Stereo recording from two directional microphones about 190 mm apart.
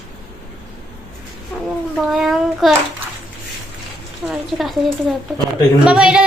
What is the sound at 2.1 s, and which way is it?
Speech, centre (ahead or behind).